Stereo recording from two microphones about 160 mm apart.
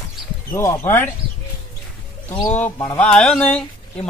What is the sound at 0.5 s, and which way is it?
Speech, 20° left (ahead or behind).